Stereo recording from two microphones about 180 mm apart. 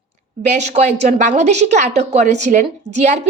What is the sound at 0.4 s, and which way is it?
Speech, 40° right (ahead or behind).